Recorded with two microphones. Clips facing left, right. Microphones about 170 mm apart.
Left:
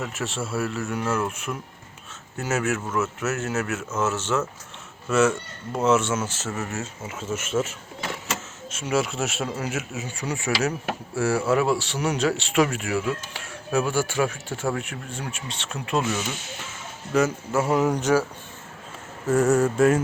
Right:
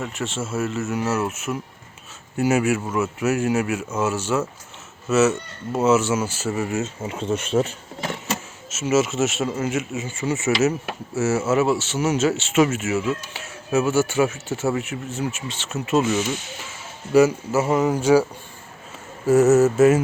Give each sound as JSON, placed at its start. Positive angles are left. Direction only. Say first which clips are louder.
{"t": 0.0, "sound": "speech", "louder": "right 2 dB", "side_deg": 0}
{"t": 7.0, "sound": "speech", "louder": "right 6 dB", "side_deg": -30}
{"t": 8.7, "sound": "speech", "louder": "right 5 dB", "side_deg": -5}
{"t": 17.1, "sound": "speech", "louder": "right 6 dB", "side_deg": -10}
{"t": 19.3, "sound": "speech", "louder": "right 5 dB", "side_deg": -5}